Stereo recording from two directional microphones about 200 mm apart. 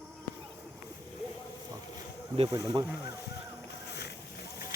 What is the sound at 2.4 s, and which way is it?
Speech, 20° right (ahead or behind).